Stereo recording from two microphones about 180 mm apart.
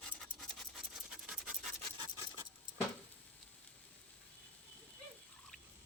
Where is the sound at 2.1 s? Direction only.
20° right (ahead or behind).